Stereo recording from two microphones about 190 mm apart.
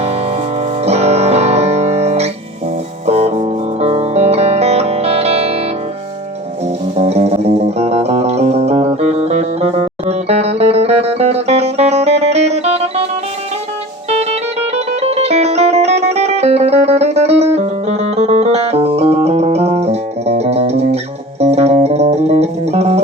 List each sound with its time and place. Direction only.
0.0 s music: 35° right (ahead or behind)
7.0 s music: 35° right (ahead or behind)
14.8 s music: 35° right (ahead or behind)